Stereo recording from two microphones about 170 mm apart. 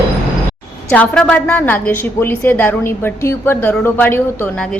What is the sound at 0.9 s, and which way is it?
A woman's voice, 5° left (ahead or behind).